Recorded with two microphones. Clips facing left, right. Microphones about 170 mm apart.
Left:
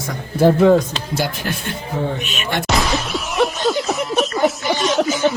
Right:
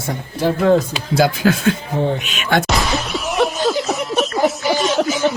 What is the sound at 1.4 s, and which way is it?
Speech, 90° right.